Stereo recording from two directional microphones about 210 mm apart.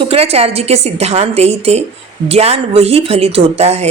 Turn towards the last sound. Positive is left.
turn(degrees=-30)  # may be behind; listen again after turning